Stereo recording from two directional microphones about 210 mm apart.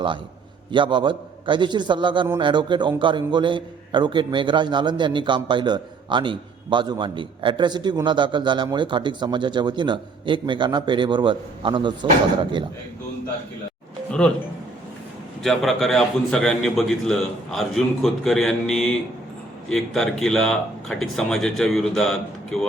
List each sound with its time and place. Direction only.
0.7 s a man's voice: 25° right (ahead or behind)
14.1 s a man's voice: 5° left (ahead or behind)
15.4 s a man's voice: centre (ahead or behind)